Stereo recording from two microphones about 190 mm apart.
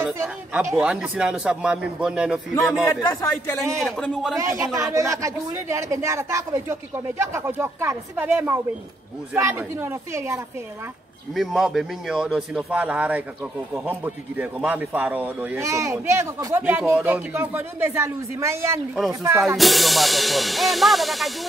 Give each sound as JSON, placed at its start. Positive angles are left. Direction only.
{"t": 0.2, "sound": "a man's voice", "side_deg": -10}
{"t": 3.0, "sound": "speech", "side_deg": 20}
{"t": 3.8, "sound": "a man's voice", "side_deg": 0}
{"t": 4.4, "sound": "speech", "side_deg": -15}
{"t": 11.3, "sound": "a man's voice", "side_deg": 0}
{"t": 19.5, "sound": "a man's voice", "side_deg": 0}